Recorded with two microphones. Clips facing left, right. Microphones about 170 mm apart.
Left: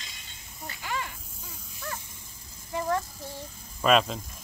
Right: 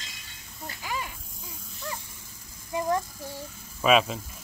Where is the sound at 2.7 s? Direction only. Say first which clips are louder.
Right 2 dB; 15° right (ahead or behind).